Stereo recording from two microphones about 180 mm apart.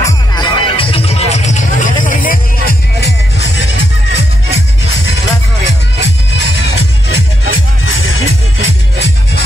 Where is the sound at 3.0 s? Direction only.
75° left (ahead or behind).